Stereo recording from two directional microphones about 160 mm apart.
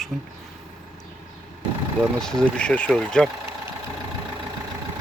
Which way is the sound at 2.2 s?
5° left (ahead or behind).